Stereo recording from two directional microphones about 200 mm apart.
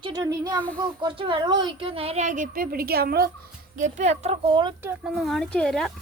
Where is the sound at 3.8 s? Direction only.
35° right (ahead or behind).